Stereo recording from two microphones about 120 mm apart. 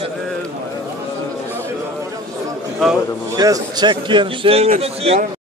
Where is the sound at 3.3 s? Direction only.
30° right (ahead or behind); by 5.3 s 55° right (ahead or behind).